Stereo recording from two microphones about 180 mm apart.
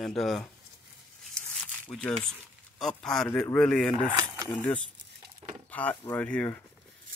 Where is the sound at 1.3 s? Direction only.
5° left (ahead or behind).